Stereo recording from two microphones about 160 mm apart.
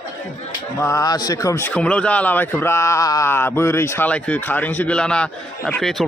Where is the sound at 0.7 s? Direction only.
20° left (ahead or behind).